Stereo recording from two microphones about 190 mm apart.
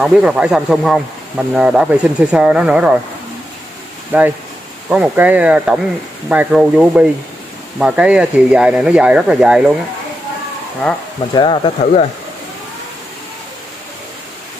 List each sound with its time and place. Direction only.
0.0 s speech: 5° right (ahead or behind)
4.1 s speech: 10° right (ahead or behind)
11.3 s speech: 25° left (ahead or behind)